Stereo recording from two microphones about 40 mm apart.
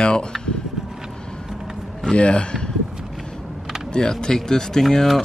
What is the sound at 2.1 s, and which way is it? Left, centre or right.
Speech, left.